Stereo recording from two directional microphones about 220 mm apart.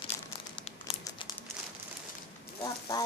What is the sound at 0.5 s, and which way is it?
Crumpling, 25° left (ahead or behind).